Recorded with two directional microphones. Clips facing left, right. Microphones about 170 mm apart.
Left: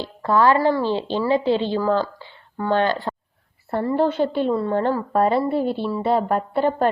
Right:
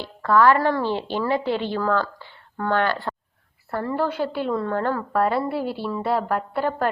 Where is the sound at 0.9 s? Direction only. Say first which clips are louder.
Left 3 dB; 15° right (ahead or behind).